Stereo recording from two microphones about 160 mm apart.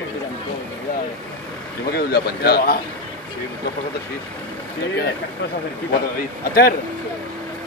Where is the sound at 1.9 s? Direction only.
80° left.